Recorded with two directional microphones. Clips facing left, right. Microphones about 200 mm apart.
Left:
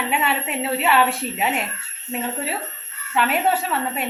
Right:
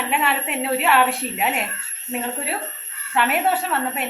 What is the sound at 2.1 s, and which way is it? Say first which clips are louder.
Speech: even; 15° right (ahead or behind).